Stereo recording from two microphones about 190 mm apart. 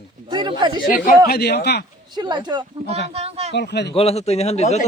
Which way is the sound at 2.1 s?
20° right (ahead or behind).